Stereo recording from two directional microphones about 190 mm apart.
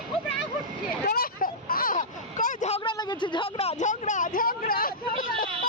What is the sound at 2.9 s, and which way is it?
Speech, 25° left (ahead or behind).